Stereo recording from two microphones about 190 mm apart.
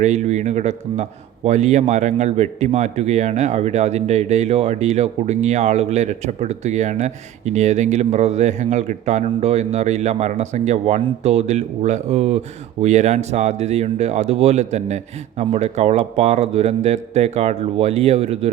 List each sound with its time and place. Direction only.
0.0 s speech: 35° right (ahead or behind)